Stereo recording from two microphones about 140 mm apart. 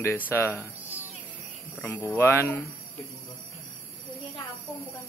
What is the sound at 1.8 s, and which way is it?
Speech, 10° left (ahead or behind).